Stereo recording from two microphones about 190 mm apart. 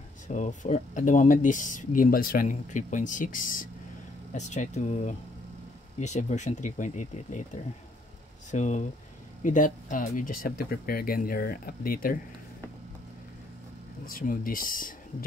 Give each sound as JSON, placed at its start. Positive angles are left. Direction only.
{"t": 0.3, "sound": "speech", "side_deg": 40}
{"t": 8.5, "sound": "speech", "side_deg": 40}
{"t": 14.0, "sound": "speech", "side_deg": 50}